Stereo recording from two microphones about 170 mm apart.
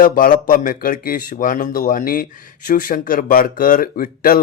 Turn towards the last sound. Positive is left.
turn(degrees=60)  # may be behind; listen again after turning